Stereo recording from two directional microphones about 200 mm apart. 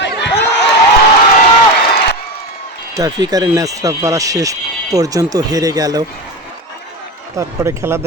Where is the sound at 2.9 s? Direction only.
20° right (ahead or behind).